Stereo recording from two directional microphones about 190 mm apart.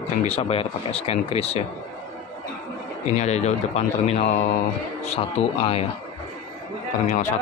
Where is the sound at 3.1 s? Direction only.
35° left (ahead or behind).